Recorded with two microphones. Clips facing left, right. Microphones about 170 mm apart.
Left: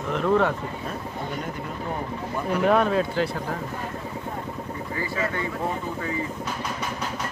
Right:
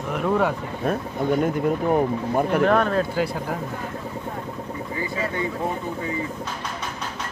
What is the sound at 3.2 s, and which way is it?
Speech, 10° right (ahead or behind).